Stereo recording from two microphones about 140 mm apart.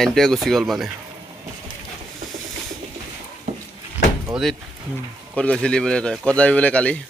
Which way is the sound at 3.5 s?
55° right (ahead or behind).